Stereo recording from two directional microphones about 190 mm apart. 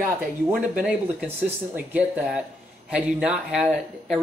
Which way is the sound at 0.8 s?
10° right (ahead or behind).